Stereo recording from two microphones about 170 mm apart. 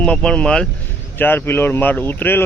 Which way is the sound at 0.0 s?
5° left (ahead or behind).